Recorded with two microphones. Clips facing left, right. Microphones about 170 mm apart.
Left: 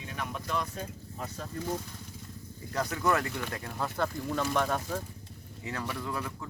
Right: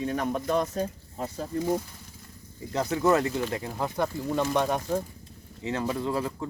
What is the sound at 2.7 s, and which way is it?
Speech, 25° right (ahead or behind).